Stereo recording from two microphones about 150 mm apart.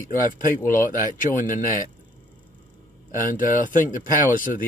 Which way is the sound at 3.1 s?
65° left (ahead or behind).